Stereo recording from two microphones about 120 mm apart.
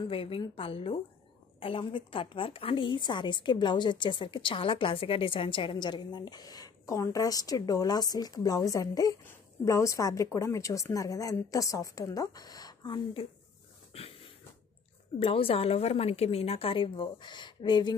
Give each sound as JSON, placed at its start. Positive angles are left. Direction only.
{"t": 0.0, "sound": "a woman's voice", "side_deg": 50}
{"t": 13.9, "sound": "a sound", "side_deg": 55}
{"t": 15.1, "sound": "a woman's voice", "side_deg": 55}